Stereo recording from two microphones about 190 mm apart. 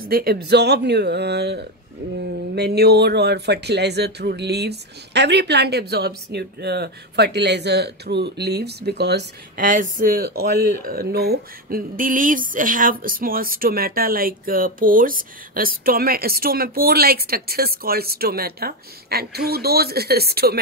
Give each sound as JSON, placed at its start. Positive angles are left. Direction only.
{"t": 0.0, "sound": "speech", "side_deg": -50}